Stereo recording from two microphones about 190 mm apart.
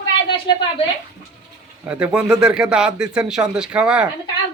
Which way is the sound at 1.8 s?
5° right (ahead or behind).